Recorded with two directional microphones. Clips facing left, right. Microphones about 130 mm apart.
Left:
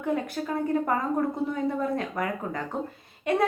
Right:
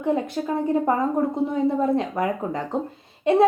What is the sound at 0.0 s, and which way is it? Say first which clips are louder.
A woman's voice: right 5 dB; 25° right (ahead or behind).